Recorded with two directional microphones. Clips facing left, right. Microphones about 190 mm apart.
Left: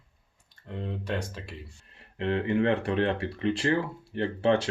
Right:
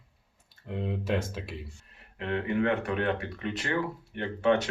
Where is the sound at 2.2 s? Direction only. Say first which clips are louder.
Left 3 dB; 30° left (ahead or behind).